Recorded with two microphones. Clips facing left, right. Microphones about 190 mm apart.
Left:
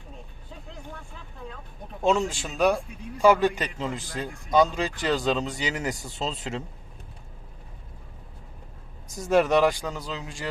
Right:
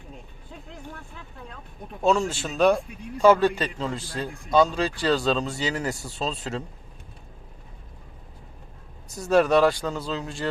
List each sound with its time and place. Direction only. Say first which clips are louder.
2.0 s a man's voice: right 1 dB; 15° left (ahead or behind)
9.1 s a man's voice: right 2 dB; 15° left (ahead or behind)